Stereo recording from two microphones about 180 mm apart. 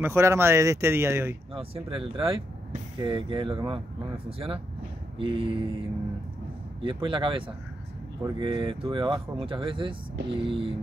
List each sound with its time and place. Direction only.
0.0 s speech: 15° right (ahead or behind)
1.5 s speech: 30° right (ahead or behind)